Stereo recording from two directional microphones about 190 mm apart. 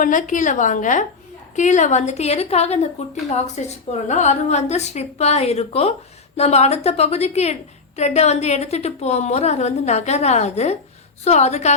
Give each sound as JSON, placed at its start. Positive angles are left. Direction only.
{"t": 0.0, "sound": "a woman's voice", "side_deg": 40}